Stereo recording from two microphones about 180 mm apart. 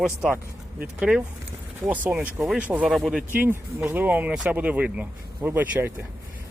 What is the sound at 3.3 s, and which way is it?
Speech, 10° right (ahead or behind).